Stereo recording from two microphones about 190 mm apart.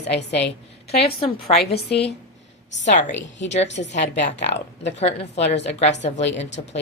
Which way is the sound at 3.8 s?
50° left (ahead or behind).